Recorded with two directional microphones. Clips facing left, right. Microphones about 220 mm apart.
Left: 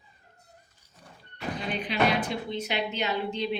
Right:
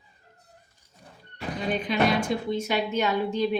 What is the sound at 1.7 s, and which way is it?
Speech, 45° right (ahead or behind).